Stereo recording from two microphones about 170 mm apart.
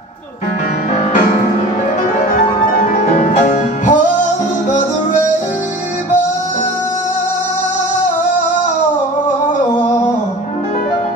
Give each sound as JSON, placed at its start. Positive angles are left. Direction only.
{"t": 2.8, "sound": "music", "side_deg": 45}